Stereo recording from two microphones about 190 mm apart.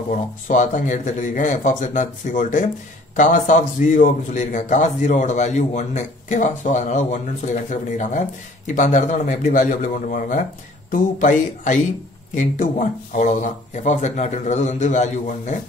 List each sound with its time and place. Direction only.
0.1 s a man's voice: 45° left (ahead or behind)